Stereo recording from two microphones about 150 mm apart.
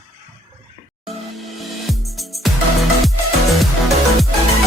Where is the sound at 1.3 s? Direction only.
Centre (ahead or behind).